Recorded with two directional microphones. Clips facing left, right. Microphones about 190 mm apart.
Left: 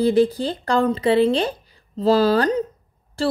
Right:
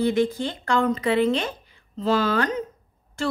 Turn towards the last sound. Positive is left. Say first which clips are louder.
# left 4 dB
turn(degrees=35)  # may be behind; listen again after turning